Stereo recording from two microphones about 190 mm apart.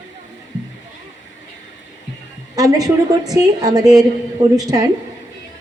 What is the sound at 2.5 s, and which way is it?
A woman's voice, 20° right (ahead or behind).